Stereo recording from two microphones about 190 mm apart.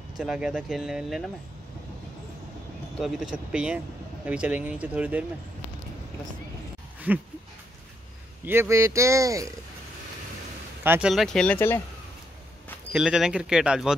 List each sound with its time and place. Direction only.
0.2 s speech: 5° right (ahead or behind)
3.0 s speech: centre (ahead or behind)
7.1 s speech: 10° right (ahead or behind)
8.5 s speech: 15° right (ahead or behind)
10.8 s speech: 10° right (ahead or behind); by 11.8 s 10° left (ahead or behind)
12.9 s speech: 5° right (ahead or behind)